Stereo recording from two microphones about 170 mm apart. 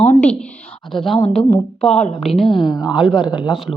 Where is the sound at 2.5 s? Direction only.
25° left (ahead or behind).